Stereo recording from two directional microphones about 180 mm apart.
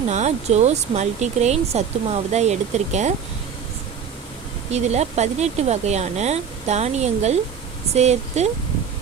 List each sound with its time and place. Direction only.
0.1 s speech: 40° right (ahead or behind)
4.7 s speech: 40° right (ahead or behind)